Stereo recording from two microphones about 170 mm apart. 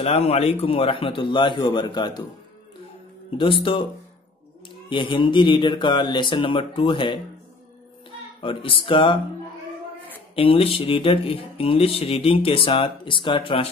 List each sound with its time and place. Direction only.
0.0 s speech: 35° left (ahead or behind)
3.3 s speech: 30° left (ahead or behind)
4.8 s speech: 30° left (ahead or behind)
8.4 s speech: 30° left (ahead or behind)
10.3 s speech: 35° left (ahead or behind)